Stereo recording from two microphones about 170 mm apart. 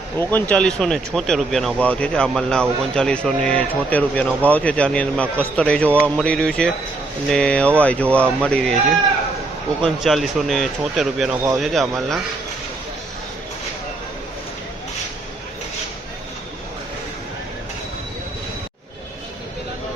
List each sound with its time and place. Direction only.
0.2 s speech: 10° left (ahead or behind)
9.8 s speech: centre (ahead or behind)